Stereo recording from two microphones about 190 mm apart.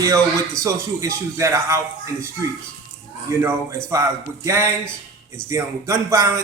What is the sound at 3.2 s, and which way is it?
A man's voice, 15° right (ahead or behind).